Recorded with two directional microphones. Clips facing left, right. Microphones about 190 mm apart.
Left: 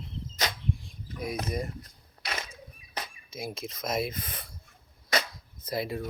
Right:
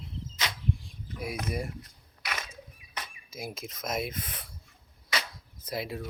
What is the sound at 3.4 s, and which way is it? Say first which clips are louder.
Speech: left 2 dB; 5° right (ahead or behind).